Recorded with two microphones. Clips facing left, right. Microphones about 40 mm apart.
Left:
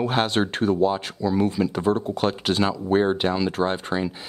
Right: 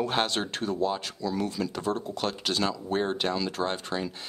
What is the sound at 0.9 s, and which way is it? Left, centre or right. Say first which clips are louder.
Speech: left 6 dB; centre.